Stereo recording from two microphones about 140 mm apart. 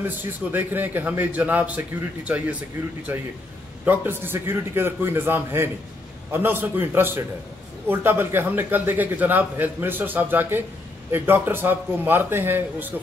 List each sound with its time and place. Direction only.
0.0 s a man's voice: 15° right (ahead or behind)